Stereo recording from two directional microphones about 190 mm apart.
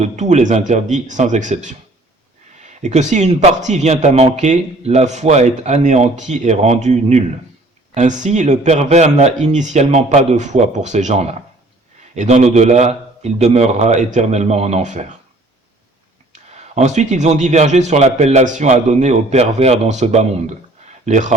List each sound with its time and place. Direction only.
0.0 s a man's voice: 35° right (ahead or behind)
2.8 s a man's voice: 40° right (ahead or behind)
16.3 s a man's voice: 35° right (ahead or behind)